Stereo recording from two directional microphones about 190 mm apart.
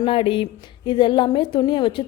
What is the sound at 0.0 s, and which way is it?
A woman's voice, 30° left (ahead or behind).